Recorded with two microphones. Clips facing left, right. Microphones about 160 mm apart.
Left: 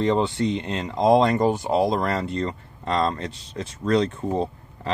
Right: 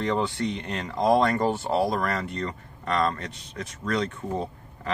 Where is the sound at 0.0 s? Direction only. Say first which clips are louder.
Left 5 dB; 25° left (ahead or behind).